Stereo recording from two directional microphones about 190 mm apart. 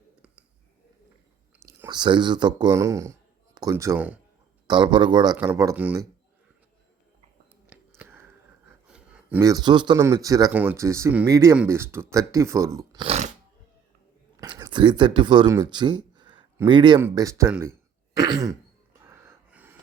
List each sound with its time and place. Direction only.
1.6 s speech: 20° right (ahead or behind)
4.6 s a man's voice: 25° right (ahead or behind)
7.7 s a sound: 10° right (ahead or behind)
9.4 s a man's voice: 20° right (ahead or behind)
13.1 s a sound: 35° right (ahead or behind)
14.4 s a man's voice: 25° right (ahead or behind)
19.0 s snort: 15° right (ahead or behind)